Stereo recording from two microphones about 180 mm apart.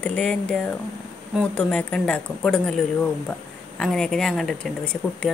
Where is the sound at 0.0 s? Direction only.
5° left (ahead or behind).